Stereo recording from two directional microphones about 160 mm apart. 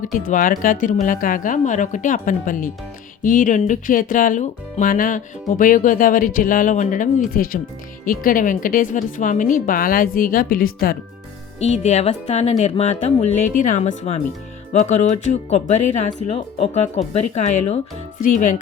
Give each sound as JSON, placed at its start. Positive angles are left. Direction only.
{"t": 0.0, "sound": "speech", "side_deg": 55}
{"t": 11.6, "sound": "speech", "side_deg": 45}